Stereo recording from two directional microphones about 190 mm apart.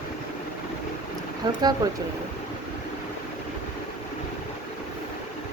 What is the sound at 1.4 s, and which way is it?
Speech, 25° right (ahead or behind).